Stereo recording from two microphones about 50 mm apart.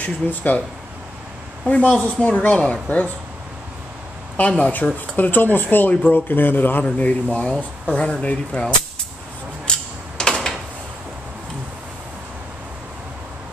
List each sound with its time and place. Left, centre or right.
0.0 s speech: left
1.7 s speech: left
4.4 s speech: left
7.0 s speech: left
9.7 s a sound: centre